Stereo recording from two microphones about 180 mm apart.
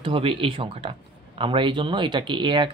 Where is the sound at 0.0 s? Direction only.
30° right (ahead or behind).